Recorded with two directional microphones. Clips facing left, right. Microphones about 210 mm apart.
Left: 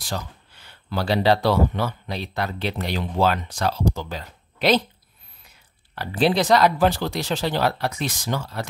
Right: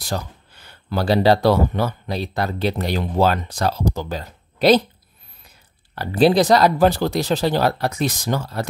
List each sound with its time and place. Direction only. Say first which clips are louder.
0.0 s speech: right 4 dB; 45° right (ahead or behind)
5.9 s speech: right 5 dB; 40° right (ahead or behind)